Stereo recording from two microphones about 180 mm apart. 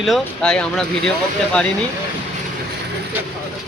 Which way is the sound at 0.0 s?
Centre (ahead or behind).